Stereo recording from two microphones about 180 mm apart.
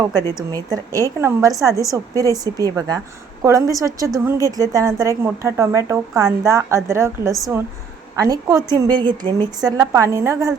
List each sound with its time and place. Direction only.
0.5 s a woman's voice: 20° right (ahead or behind)